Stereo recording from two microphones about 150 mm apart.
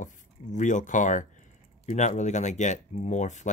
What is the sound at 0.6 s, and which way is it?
Speech, 55° left (ahead or behind).